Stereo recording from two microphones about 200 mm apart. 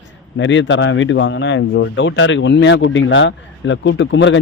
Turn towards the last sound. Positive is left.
turn(degrees=65)  # may be behind; listen again after turning